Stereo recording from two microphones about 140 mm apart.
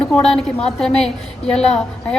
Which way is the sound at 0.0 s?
5° left (ahead or behind).